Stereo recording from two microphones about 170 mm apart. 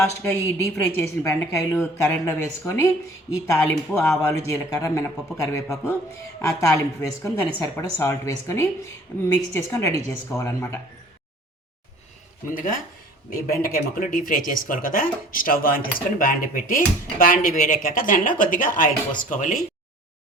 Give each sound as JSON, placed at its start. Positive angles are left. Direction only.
{"t": 0.2, "sound": "speech", "side_deg": 15}
{"t": 9.3, "sound": "speech", "side_deg": 15}
{"t": 12.5, "sound": "speech", "side_deg": 55}